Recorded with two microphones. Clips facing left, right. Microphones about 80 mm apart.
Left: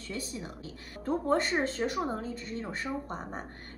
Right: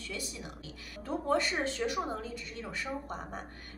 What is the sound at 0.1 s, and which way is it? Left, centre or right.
A woman's voice, left.